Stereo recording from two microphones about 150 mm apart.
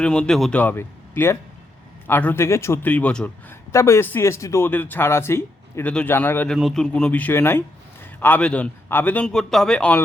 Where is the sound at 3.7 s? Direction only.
20° left (ahead or behind).